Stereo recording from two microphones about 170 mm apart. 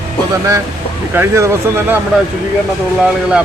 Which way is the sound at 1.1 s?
15° right (ahead or behind).